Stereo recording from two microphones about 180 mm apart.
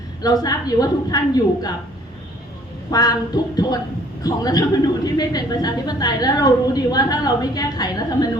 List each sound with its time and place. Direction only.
0.2 s a woman's voice: 20° left (ahead or behind)
2.9 s a woman's voice: 20° left (ahead or behind)